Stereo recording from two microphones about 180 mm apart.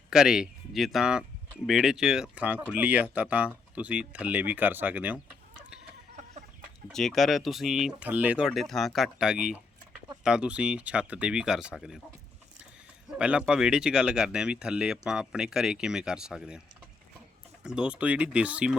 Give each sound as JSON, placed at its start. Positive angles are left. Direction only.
{"t": 0.1, "sound": "speech", "side_deg": -5}
{"t": 6.8, "sound": "speech", "side_deg": 0}
{"t": 13.1, "sound": "speech", "side_deg": -5}
{"t": 17.6, "sound": "speech", "side_deg": -5}